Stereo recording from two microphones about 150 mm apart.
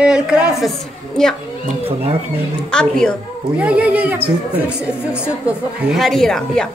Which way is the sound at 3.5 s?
10° right (ahead or behind).